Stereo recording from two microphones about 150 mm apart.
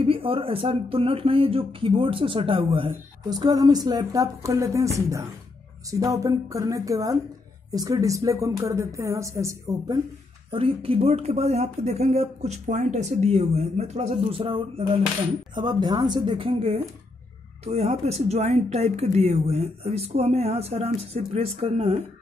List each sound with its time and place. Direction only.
0.0 s speech: 35° right (ahead or behind); by 9.9 s 20° right (ahead or behind)
10.5 s speech: 40° right (ahead or behind)
17.6 s speech: 45° right (ahead or behind)